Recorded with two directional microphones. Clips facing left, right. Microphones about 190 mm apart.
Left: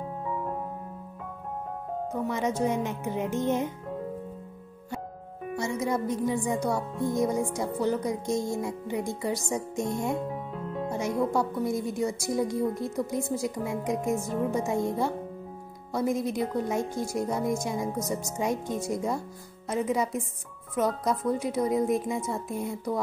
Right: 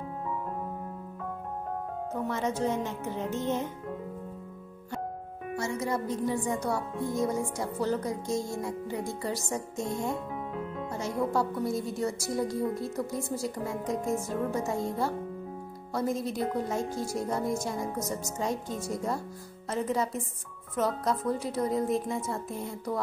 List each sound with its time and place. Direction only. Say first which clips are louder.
2.1 s speech: left 2 dB; 15° left (ahead or behind)
5.6 s speech: left 3 dB; 15° left (ahead or behind)
10.9 s speech: left 3 dB; 15° left (ahead or behind)